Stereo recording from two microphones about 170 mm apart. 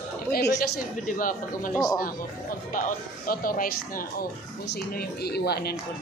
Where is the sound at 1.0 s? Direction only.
50° left (ahead or behind).